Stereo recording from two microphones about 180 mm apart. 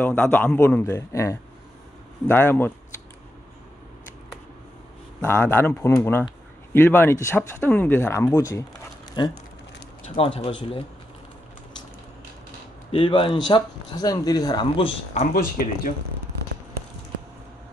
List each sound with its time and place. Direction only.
0.0 s speech: 10° left (ahead or behind)
5.2 s speech: 15° left (ahead or behind); by 10.5 s 30° left (ahead or behind)
12.9 s speech: 30° left (ahead or behind)
15.3 s speech: 55° left (ahead or behind)